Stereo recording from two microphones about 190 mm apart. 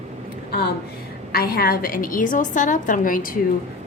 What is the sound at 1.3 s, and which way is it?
Speech, 55° left (ahead or behind).